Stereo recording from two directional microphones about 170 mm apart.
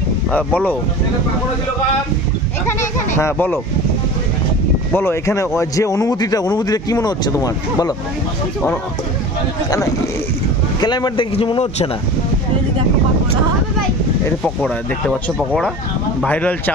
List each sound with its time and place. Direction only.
0.3 s speech: 10° left (ahead or behind)
2.8 s speech: 15° left (ahead or behind)
4.9 s speech: 15° left (ahead or behind)
10.8 s speech: 25° left (ahead or behind)
14.4 s speech: centre (ahead or behind)